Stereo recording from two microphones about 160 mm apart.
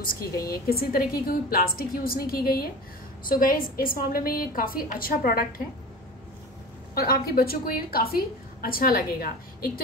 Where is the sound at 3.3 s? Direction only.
60° left (ahead or behind).